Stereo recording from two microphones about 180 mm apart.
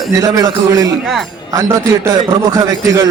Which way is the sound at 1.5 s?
20° right (ahead or behind).